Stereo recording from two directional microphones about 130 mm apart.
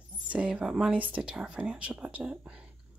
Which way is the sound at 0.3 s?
10° right (ahead or behind).